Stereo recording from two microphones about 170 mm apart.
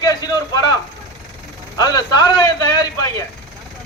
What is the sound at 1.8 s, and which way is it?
A man's voice, 25° left (ahead or behind).